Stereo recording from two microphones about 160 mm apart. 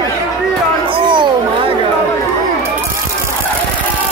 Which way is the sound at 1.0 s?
30° right (ahead or behind).